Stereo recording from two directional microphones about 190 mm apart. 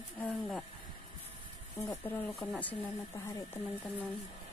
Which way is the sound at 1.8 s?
15° left (ahead or behind).